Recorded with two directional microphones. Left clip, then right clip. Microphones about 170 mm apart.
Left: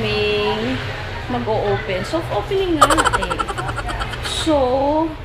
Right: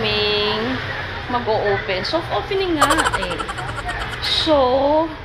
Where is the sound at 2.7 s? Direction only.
Centre (ahead or behind).